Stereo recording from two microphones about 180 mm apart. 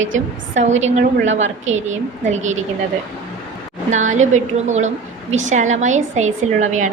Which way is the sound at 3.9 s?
45° right (ahead or behind).